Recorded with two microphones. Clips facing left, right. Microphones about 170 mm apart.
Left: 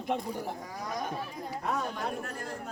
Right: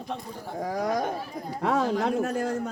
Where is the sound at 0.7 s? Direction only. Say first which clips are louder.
Right 10 dB; 75° right (ahead or behind).